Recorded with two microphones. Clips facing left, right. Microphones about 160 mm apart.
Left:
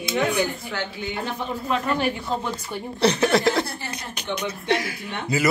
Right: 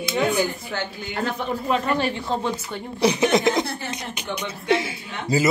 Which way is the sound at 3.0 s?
15° right (ahead or behind).